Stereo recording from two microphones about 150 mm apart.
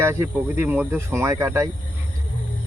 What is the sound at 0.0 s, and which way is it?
Speech, 15° right (ahead or behind).